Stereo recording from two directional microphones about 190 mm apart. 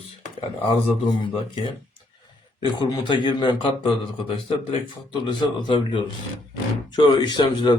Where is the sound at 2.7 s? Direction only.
25° left (ahead or behind).